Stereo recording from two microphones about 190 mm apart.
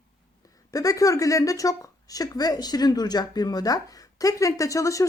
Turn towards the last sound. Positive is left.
turn(degrees=15)  # may be behind; listen again after turning